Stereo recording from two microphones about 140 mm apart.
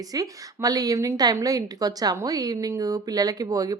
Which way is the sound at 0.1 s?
25° right (ahead or behind).